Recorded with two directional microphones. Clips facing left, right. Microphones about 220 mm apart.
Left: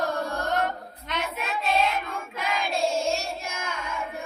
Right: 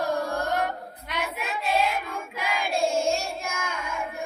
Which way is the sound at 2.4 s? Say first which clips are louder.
Even; 10° right (ahead or behind).